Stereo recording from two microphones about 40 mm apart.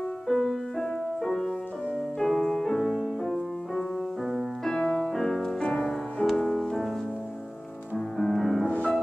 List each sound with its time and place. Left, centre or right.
0.3 s music: centre
4.6 s music: centre
8.2 s music: centre
8.6 s music: left